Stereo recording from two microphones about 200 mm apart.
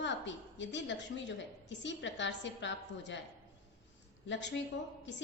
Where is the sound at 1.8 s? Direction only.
65° left (ahead or behind).